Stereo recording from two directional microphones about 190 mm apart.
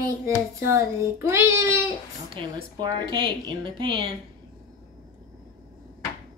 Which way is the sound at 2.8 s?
25° right (ahead or behind).